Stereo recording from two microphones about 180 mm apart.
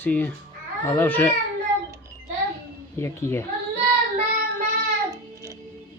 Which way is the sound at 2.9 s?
15° left (ahead or behind).